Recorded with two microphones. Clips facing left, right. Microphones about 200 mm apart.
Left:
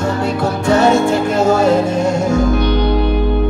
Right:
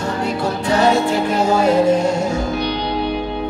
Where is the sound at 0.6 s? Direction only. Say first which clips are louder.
Left 4 dB; 45° left (ahead or behind).